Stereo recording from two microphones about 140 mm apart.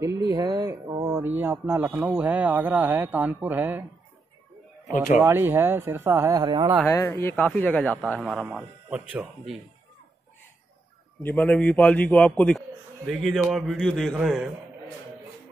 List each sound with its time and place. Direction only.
0.3 s speech: 30° right (ahead or behind)
1.0 s music: 15° right (ahead or behind)
1.7 s speech: 15° right (ahead or behind)
5.2 s speech: 15° right (ahead or behind)
6.3 s speech: 30° right (ahead or behind)
6.9 s speech: 20° left (ahead or behind)
8.2 s speech: 5° right (ahead or behind)
11.2 s a man's voice: 10° left (ahead or behind); by 14.5 s 5° right (ahead or behind)